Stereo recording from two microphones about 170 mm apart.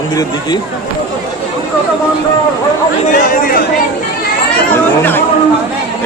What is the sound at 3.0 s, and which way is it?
Speech, 55° left (ahead or behind).